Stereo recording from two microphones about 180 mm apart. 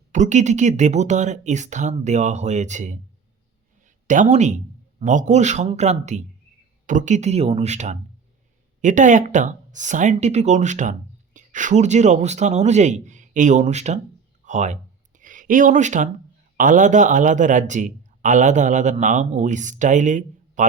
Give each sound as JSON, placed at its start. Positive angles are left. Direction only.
{"t": 0.1, "sound": "speech", "side_deg": -40}
{"t": 14.4, "sound": "a sound", "side_deg": -40}
{"t": 16.6, "sound": "speech", "side_deg": -45}